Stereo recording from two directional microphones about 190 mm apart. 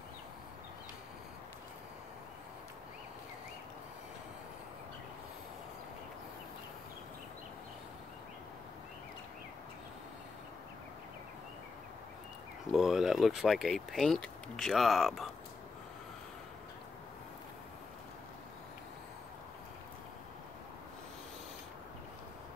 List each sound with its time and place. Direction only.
12.7 s speech: centre (ahead or behind)